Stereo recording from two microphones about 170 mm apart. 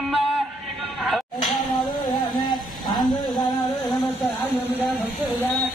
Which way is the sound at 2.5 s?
25° left (ahead or behind).